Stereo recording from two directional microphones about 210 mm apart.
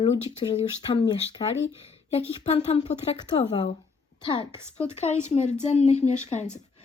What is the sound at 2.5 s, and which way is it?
Speech, 30° left (ahead or behind).